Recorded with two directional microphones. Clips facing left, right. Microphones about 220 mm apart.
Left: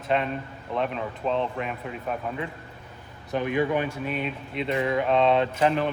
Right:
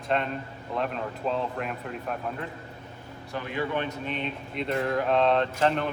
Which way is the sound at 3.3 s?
20° left (ahead or behind).